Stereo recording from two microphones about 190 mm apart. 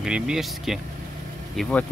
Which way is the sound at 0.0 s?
5° right (ahead or behind).